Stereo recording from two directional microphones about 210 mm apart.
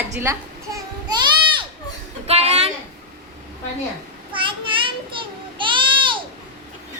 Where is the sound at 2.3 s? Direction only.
30° right (ahead or behind).